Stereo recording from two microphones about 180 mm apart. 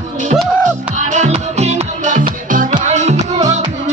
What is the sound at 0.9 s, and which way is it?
Music, 40° right (ahead or behind).